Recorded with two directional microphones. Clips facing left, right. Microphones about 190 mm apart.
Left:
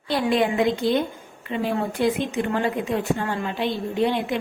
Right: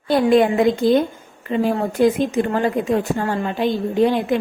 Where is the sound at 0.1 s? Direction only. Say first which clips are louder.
Right 7 dB; 45° right (ahead or behind).